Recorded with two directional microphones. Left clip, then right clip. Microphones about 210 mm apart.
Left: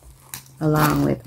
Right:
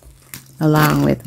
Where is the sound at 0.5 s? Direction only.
50° right (ahead or behind).